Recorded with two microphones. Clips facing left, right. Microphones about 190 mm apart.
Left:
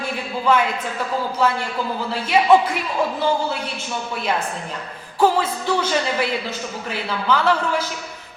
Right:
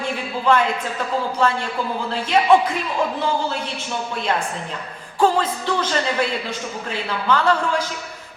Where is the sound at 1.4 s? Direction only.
5° left (ahead or behind).